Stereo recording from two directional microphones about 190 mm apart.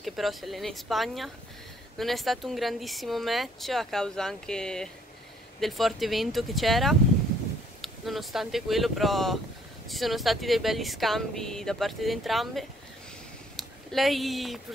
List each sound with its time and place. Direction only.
0.0 s speech: centre (ahead or behind)